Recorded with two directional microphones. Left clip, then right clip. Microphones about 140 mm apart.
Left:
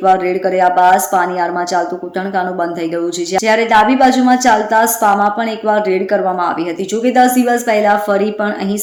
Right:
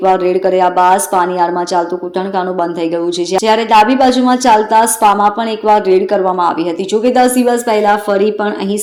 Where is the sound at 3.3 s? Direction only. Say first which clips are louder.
Right 2 dB; 20° right (ahead or behind).